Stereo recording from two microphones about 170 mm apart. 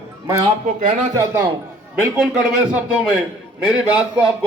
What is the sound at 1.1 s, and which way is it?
Speech, 15° right (ahead or behind).